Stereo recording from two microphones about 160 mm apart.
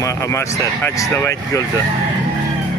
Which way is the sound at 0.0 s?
20° left (ahead or behind).